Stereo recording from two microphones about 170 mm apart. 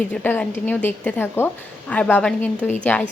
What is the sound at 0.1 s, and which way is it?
A woman's voice, 10° left (ahead or behind).